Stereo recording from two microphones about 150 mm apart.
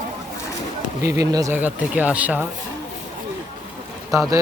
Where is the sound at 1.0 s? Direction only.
20° right (ahead or behind).